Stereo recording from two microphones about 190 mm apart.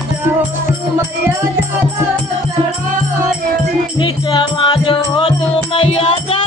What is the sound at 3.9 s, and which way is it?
Music, 25° left (ahead or behind).